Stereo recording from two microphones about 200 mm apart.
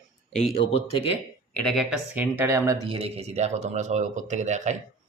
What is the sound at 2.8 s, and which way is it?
Speech, 30° right (ahead or behind).